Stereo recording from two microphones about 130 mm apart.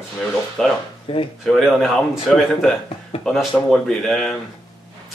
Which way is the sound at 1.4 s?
Centre (ahead or behind).